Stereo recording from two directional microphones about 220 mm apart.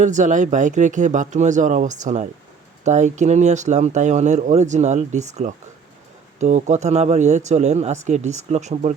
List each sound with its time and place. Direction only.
0.0 s speech: 35° right (ahead or behind)